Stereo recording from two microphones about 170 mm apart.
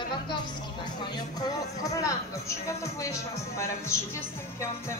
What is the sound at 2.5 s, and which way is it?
Speech, 15° left (ahead or behind).